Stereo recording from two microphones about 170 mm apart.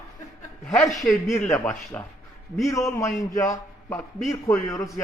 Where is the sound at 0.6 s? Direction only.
5° left (ahead or behind).